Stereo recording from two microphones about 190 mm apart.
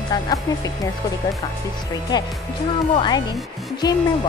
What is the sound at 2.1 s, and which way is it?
Speech, 25° left (ahead or behind).